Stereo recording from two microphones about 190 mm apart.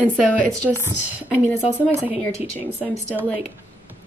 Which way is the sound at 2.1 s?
35° left (ahead or behind).